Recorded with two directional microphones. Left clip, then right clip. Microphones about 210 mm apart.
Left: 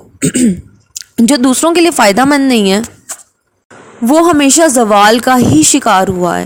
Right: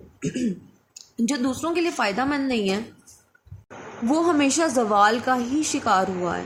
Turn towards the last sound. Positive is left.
turn(degrees=45)  # may be behind; listen again after turning